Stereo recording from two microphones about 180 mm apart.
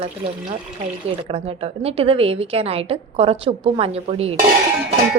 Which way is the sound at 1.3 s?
35° right (ahead or behind).